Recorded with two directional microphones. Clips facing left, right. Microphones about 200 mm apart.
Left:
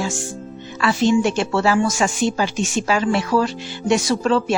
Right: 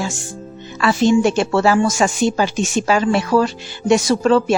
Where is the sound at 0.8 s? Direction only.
45° right (ahead or behind).